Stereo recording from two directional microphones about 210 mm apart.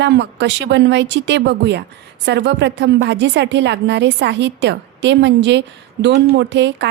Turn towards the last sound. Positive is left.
turn(degrees=-55)  # may be behind; listen again after turning